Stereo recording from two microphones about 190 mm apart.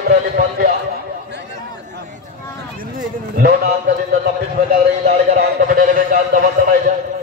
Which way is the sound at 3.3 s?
55° right (ahead or behind).